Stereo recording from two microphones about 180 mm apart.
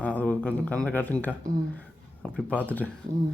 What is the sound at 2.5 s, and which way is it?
Speech, 10° left (ahead or behind).